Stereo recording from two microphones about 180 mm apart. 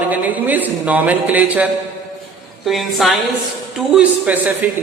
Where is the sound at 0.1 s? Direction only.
10° right (ahead or behind).